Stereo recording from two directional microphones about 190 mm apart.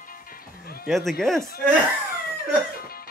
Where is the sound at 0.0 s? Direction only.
50° left (ahead or behind).